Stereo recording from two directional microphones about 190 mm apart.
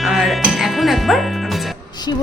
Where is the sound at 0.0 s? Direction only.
Centre (ahead or behind).